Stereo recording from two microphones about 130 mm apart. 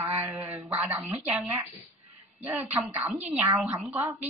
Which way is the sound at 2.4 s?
15° right (ahead or behind).